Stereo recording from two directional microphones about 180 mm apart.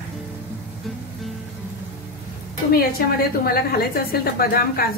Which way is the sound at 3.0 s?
55° left (ahead or behind).